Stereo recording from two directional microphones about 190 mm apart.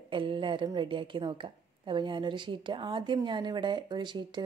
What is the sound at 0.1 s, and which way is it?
Speech, 25° right (ahead or behind).